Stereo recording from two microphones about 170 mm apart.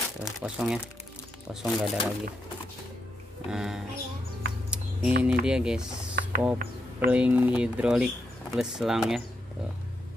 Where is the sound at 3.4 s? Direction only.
5° right (ahead or behind).